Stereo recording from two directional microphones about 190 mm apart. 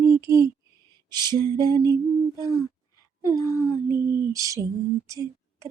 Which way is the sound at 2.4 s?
15° right (ahead or behind).